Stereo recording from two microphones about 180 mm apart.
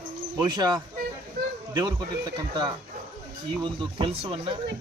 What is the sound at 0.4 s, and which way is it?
Speech, 25° right (ahead or behind).